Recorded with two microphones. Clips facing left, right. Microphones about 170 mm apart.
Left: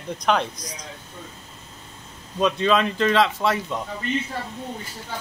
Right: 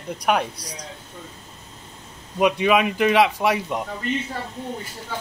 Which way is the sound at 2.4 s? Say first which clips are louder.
Right 2 dB; 15° right (ahead or behind).